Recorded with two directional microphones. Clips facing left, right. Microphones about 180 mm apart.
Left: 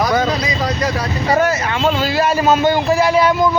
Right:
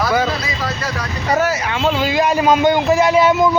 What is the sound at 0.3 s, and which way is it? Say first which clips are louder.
Vehicle: left 3 dB; 20° left (ahead or behind).